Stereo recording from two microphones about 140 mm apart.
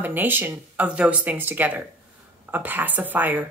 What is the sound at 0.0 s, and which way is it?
Speech, 15° right (ahead or behind).